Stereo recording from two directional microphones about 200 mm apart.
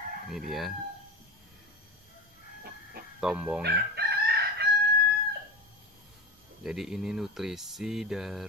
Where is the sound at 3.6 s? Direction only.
55° right (ahead or behind).